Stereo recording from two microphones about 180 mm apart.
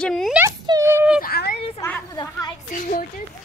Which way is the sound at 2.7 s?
50° left (ahead or behind).